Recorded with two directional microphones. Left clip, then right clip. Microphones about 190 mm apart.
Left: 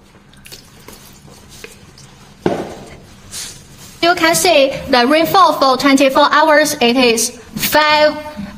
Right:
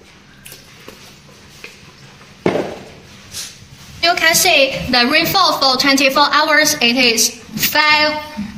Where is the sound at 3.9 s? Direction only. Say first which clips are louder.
Left 1 dB; 50° left (ahead or behind).